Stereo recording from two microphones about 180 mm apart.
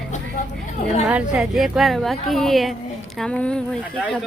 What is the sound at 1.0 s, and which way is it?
Speech, 5° right (ahead or behind).